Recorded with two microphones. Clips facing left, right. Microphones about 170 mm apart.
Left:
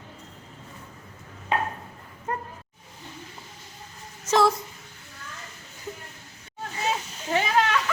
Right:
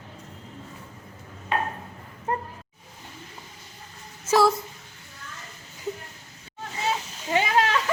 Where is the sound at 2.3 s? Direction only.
25° right (ahead or behind).